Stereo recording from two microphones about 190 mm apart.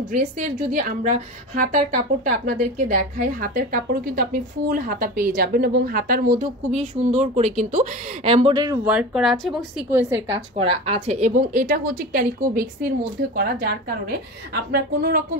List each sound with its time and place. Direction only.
0.7 s a woman's voice: 40° right (ahead or behind)
6.7 s a woman's voice: 35° right (ahead or behind)
8.8 s a woman's voice: 5° right (ahead or behind)
10.5 s a woman's voice: 30° right (ahead or behind); by 15.2 s 55° right (ahead or behind)